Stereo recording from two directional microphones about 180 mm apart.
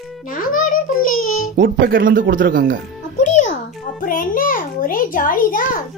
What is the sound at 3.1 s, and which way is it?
Music, 40° left (ahead or behind).